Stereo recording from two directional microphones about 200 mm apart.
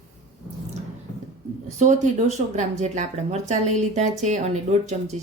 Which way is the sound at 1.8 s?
35° right (ahead or behind).